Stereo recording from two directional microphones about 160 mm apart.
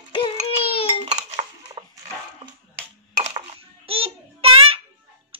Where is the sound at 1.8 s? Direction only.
40° right (ahead or behind).